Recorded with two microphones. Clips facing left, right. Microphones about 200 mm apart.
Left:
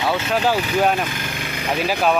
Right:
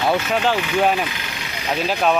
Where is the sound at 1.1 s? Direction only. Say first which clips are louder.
Left 3 dB; 50° left (ahead or behind).